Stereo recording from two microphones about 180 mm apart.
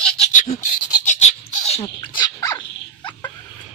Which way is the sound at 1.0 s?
40° left (ahead or behind).